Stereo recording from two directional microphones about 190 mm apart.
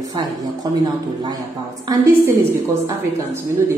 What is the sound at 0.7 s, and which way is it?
A woman's voice, 20° right (ahead or behind).